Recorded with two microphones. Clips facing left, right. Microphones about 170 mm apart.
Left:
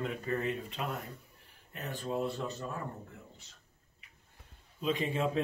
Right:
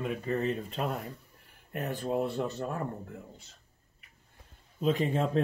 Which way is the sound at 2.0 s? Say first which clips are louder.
Right 3 dB; 50° right (ahead or behind).